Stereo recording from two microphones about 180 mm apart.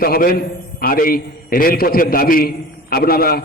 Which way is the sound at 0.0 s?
55° left (ahead or behind).